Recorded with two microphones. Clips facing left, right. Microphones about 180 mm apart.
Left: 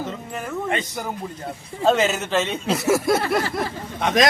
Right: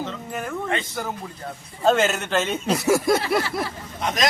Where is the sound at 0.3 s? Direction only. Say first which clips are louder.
Right 1 dB; centre (ahead or behind).